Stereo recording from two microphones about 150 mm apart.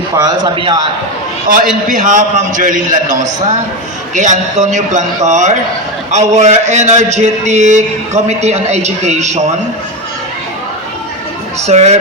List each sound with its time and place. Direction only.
0.2 s a man's voice: 25° right (ahead or behind)
1.9 s a man's voice: 60° right (ahead or behind)
11.6 s a man's voice: 50° right (ahead or behind)